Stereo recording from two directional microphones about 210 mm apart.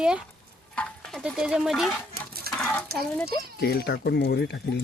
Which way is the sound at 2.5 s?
45° right (ahead or behind).